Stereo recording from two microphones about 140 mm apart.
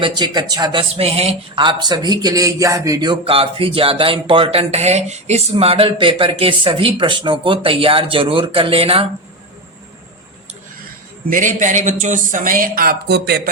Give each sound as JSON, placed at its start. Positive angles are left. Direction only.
{"t": 0.0, "sound": "speech", "side_deg": -30}
{"t": 11.3, "sound": "speech", "side_deg": -65}